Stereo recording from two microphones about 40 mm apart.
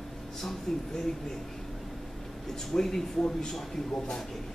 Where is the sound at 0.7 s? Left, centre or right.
Centre.